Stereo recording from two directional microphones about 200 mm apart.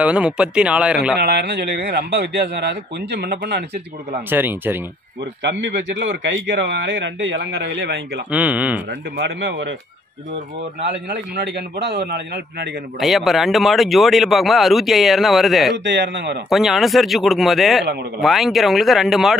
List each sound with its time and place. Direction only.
0.0 s speech: 5° right (ahead or behind)
1.1 s a man's voice: 55° right (ahead or behind)
4.3 s speech: 10° right (ahead or behind)
5.4 s a man's voice: 60° right (ahead or behind)
8.3 s speech: 5° right (ahead or behind)
9.1 s a man's voice: 60° right (ahead or behind)
10.8 s a man's voice: 60° right (ahead or behind)
13.0 s speech: centre (ahead or behind)
15.8 s a man's voice: 65° right (ahead or behind)
16.4 s speech: centre (ahead or behind)